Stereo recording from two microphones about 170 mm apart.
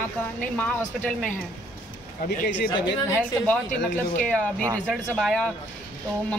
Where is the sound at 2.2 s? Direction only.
65° left (ahead or behind).